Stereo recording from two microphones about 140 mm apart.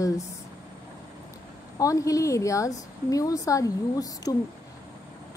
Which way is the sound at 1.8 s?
25° left (ahead or behind).